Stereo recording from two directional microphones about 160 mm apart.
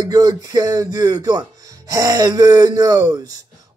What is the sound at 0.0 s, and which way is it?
A man's voice, 25° right (ahead or behind).